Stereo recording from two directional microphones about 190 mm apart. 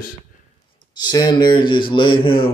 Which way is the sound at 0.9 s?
20° left (ahead or behind).